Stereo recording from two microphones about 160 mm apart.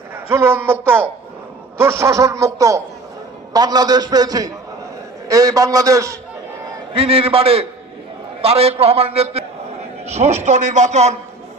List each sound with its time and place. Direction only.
0.1 s a man's voice: 15° right (ahead or behind)
6.9 s a man's voice: 35° right (ahead or behind)